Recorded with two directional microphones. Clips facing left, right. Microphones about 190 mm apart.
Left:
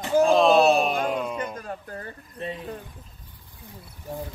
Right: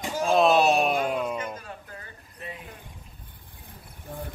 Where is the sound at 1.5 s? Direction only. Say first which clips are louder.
Left 6 dB; 45° left (ahead or behind).